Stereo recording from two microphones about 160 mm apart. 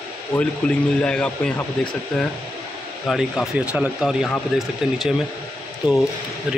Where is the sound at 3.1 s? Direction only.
Centre (ahead or behind).